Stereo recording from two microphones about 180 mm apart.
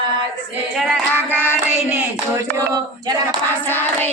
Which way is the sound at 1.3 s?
10° left (ahead or behind).